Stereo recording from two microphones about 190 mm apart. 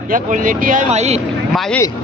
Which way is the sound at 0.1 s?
45° right (ahead or behind).